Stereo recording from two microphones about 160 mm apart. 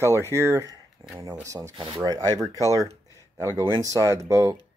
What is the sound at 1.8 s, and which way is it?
Speech, 30° right (ahead or behind).